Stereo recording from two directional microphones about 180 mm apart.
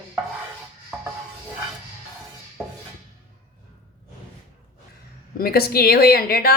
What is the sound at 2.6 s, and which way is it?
Dishes, 15° right (ahead or behind).